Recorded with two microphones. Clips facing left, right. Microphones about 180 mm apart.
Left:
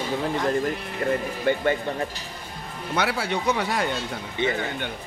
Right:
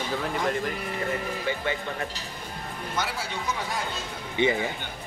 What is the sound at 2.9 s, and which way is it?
Speech, 65° left (ahead or behind).